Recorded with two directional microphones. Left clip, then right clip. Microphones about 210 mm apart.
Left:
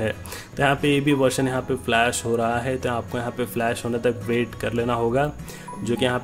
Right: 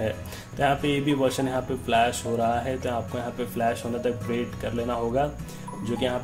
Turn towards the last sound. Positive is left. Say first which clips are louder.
# left 4 dB
turn(degrees=30)  # may be behind; listen again after turning